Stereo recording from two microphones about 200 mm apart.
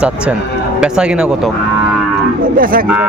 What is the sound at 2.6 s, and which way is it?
Speech, 45° right (ahead or behind).